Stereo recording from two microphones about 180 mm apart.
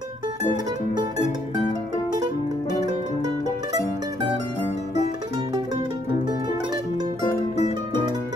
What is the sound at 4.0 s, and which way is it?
Mandolin, 20° right (ahead or behind).